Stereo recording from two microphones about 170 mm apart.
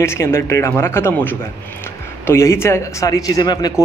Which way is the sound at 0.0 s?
15° left (ahead or behind).